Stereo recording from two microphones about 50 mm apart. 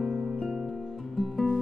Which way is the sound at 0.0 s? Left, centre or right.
Centre.